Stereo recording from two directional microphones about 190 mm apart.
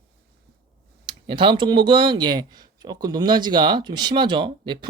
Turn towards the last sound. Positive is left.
turn(degrees=-25)  # may be behind; listen again after turning